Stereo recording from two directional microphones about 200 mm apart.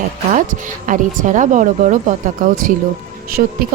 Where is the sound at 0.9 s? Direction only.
40° right (ahead or behind).